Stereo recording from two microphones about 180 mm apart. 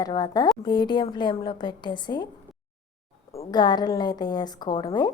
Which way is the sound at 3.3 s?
30° left (ahead or behind).